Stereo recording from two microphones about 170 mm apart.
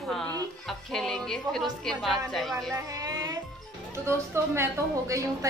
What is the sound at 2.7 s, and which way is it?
A woman's voice, 20° right (ahead or behind).